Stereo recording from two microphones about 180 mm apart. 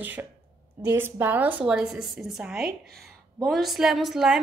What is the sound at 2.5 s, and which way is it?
Speech, 55° right (ahead or behind).